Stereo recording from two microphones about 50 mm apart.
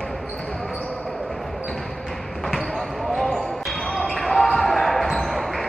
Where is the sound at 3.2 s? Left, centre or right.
Centre.